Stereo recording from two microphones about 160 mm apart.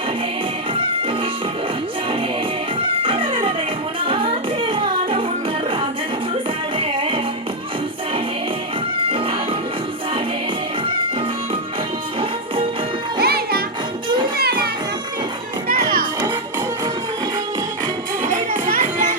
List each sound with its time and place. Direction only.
0.7 s music: 35° right (ahead or behind)
2.8 s music: 35° right (ahead or behind)
6.7 s music: 35° right (ahead or behind)
9.0 s music: 35° right (ahead or behind)
13.1 s music: 75° right (ahead or behind)
18.5 s music: 55° right (ahead or behind)